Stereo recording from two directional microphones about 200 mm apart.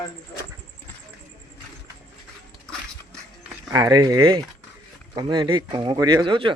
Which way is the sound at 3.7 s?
15° right (ahead or behind).